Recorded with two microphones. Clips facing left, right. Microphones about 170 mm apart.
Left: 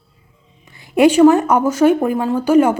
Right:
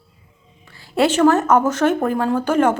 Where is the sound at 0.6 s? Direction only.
20° left (ahead or behind).